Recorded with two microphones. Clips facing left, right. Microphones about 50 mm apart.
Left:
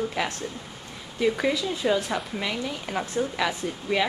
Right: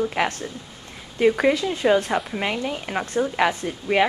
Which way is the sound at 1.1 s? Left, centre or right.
Right.